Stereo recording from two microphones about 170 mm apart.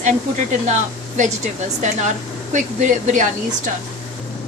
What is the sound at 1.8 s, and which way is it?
A woman's voice, 45° right (ahead or behind).